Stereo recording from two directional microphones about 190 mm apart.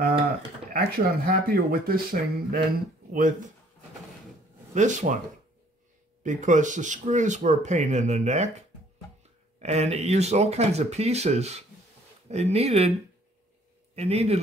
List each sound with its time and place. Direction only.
0.7 s speech: 50° right (ahead or behind)
4.7 s speech: 40° right (ahead or behind)
6.2 s speech: 40° right (ahead or behind)
9.6 s speech: 35° right (ahead or behind)
13.9 s speech: 30° right (ahead or behind)